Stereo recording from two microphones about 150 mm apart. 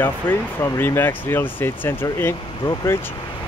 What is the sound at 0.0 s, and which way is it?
Speech, 15° left (ahead or behind).